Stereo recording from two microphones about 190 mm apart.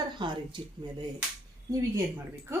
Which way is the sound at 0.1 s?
25° right (ahead or behind).